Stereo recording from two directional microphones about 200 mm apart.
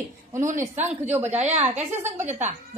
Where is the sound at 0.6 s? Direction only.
10° right (ahead or behind).